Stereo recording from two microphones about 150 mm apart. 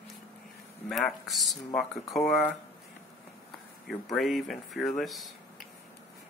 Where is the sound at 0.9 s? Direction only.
Centre (ahead or behind).